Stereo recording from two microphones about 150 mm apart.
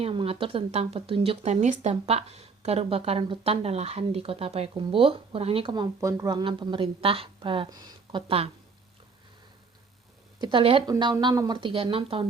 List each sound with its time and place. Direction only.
0.0 s speech: 40° right (ahead or behind)
10.4 s speech: 35° right (ahead or behind)
10.8 s speech: 25° right (ahead or behind)